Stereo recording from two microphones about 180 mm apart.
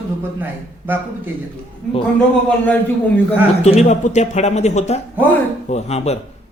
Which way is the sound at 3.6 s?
40° left (ahead or behind).